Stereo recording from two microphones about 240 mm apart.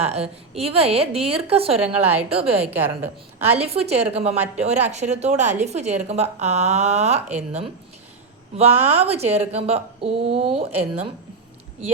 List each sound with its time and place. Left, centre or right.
0.0 s a woman's voice: right
1.8 s a woman's voice: centre
2.3 s a woman's voice: right
2.6 s a woman's voice: centre
3.5 s a woman's voice: right
8.5 s a woman's voice: right